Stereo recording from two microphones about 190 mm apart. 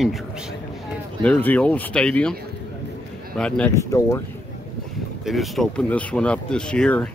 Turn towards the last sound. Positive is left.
turn(degrees=5)  # may be behind; listen again after turning